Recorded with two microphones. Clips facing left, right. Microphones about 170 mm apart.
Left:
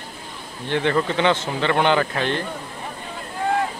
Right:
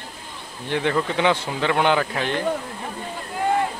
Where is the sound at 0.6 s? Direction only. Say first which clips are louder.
Left 2 dB; 10° right (ahead or behind).